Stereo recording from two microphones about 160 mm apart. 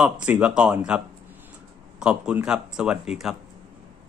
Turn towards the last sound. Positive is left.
turn(degrees=0)  # may be behind; listen again after turning